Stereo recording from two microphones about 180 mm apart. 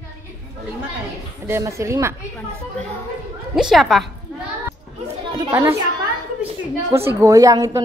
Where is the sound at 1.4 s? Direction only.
15° right (ahead or behind).